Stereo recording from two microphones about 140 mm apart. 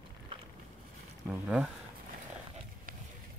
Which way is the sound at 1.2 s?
5° right (ahead or behind).